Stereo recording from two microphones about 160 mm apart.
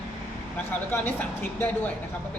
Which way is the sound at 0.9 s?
10° left (ahead or behind).